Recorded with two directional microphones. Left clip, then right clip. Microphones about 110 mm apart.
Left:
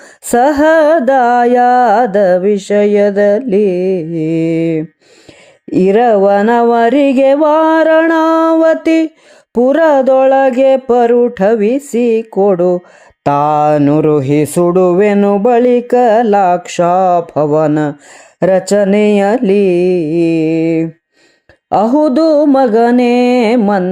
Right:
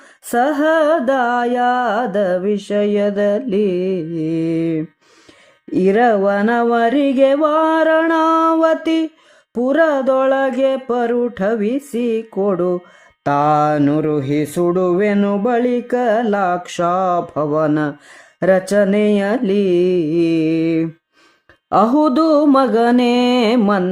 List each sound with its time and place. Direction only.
0.3 s mantra: 65° left (ahead or behind); by 9.0 s 45° left (ahead or behind)
9.6 s mantra: 60° left (ahead or behind)
14.0 s mantra: 55° left (ahead or behind); by 23.6 s 30° left (ahead or behind)